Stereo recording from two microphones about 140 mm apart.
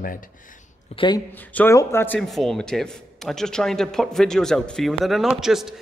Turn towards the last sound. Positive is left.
turn(degrees=-5)  # may be behind; listen again after turning